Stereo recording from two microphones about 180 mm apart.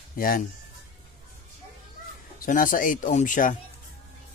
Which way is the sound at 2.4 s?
50° left (ahead or behind).